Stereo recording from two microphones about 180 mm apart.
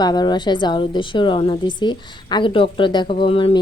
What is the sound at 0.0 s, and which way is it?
A woman's voice, 25° left (ahead or behind).